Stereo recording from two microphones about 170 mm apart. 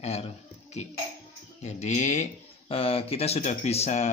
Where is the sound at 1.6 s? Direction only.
45° left (ahead or behind).